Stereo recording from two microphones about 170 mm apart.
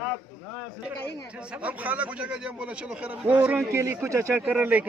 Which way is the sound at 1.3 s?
5° right (ahead or behind).